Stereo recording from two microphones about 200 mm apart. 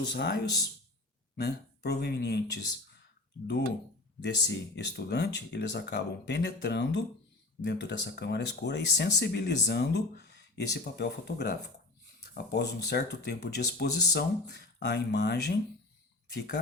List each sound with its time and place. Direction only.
0.0 s speech: 55° left (ahead or behind)
4.2 s speech: 60° left (ahead or behind)